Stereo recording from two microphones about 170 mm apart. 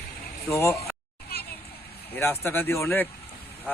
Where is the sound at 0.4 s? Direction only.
15° left (ahead or behind).